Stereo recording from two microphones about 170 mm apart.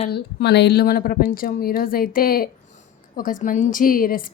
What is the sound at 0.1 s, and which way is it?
A woman's voice, 75° left (ahead or behind).